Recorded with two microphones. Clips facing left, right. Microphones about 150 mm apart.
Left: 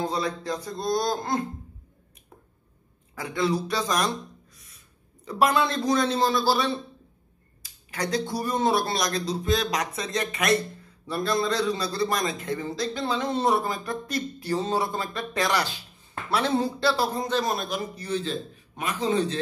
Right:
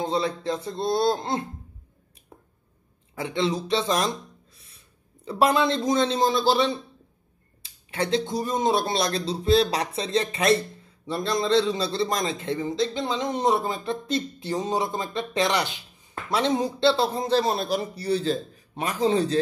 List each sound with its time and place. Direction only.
0.0 s a man's voice: 25° right (ahead or behind)
3.2 s a man's voice: 25° right (ahead or behind)